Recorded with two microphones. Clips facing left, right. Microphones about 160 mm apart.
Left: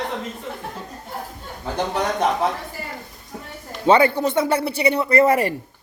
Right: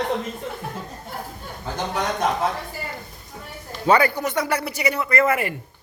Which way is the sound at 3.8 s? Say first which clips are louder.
Left 3 dB; 25° left (ahead or behind).